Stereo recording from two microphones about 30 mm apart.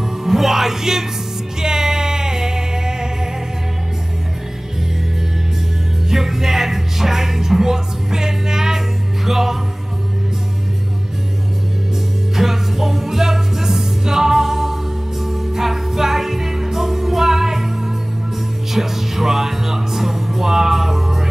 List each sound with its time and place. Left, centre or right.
0.2 s music: centre
6.0 s music: centre
12.4 s music: centre